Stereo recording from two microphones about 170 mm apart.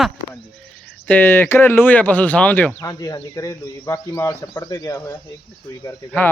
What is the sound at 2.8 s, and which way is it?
Speech, 20° left (ahead or behind).